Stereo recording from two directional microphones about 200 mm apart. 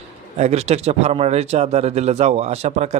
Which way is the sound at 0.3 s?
30° right (ahead or behind).